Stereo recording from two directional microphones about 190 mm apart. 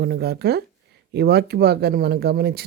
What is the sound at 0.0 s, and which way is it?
Speech, 55° right (ahead or behind).